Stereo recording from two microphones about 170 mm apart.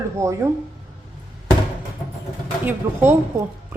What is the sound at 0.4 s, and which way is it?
Speech, 15° right (ahead or behind).